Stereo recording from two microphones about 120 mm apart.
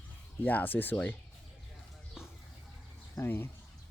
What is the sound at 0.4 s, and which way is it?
Speech, 15° left (ahead or behind).